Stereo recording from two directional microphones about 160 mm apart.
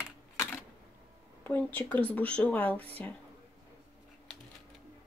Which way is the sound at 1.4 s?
10° left (ahead or behind).